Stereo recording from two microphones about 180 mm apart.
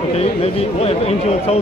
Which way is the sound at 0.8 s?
35° left (ahead or behind).